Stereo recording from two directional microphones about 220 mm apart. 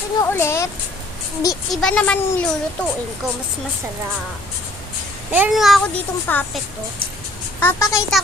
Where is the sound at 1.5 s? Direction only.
Centre (ahead or behind).